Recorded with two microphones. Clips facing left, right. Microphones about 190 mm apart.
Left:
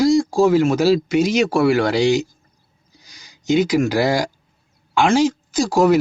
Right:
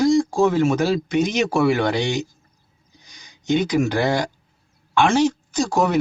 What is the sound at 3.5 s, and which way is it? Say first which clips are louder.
Speech: left 3 dB; 90° left.